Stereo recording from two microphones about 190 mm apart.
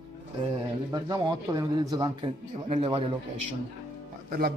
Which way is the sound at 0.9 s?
20° right (ahead or behind).